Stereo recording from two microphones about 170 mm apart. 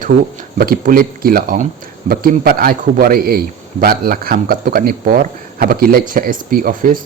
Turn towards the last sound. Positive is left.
turn(degrees=-55)  # may be behind; listen again after turning